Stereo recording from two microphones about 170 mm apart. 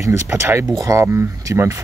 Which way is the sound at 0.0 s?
15° right (ahead or behind).